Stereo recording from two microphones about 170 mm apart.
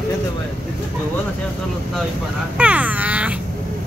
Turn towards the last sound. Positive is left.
turn(degrees=-10)  # may be behind; listen again after turning